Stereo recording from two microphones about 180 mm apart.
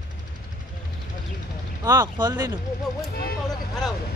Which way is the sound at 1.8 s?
25° right (ahead or behind).